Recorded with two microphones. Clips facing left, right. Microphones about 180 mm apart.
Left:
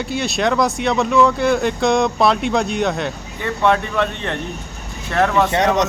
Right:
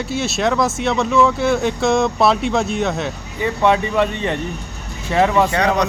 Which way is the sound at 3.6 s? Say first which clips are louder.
Right 1 dB; 10° right (ahead or behind).